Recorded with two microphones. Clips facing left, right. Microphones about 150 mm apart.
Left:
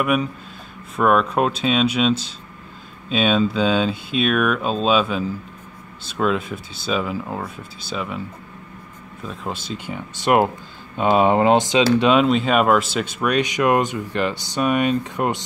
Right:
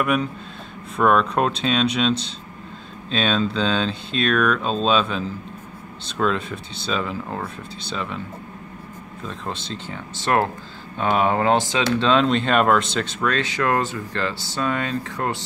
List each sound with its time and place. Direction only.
0.0 s speech: 5° left (ahead or behind)
9.3 s speech: 5° left (ahead or behind)